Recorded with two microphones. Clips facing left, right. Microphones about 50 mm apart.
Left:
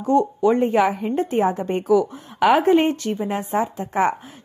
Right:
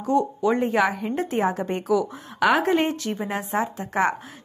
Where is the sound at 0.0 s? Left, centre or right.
Centre.